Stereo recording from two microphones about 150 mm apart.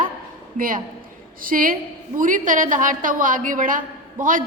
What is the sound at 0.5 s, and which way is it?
A woman's voice, 70° right (ahead or behind).